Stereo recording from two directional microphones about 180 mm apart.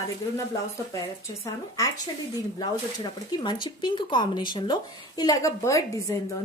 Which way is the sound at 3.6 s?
25° left (ahead or behind).